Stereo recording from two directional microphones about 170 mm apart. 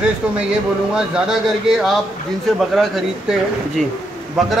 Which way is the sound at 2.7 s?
Centre (ahead or behind).